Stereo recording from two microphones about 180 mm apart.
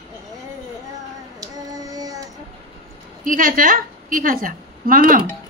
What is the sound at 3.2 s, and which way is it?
A woman's voice, 50° right (ahead or behind).